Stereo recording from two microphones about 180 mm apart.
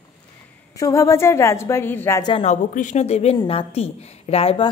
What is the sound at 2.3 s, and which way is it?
A woman's voice, 40° left (ahead or behind).